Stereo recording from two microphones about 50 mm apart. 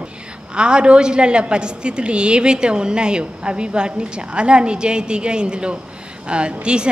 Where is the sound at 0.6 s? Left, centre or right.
Centre.